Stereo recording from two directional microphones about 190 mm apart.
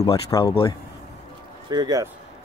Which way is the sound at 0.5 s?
25° left (ahead or behind).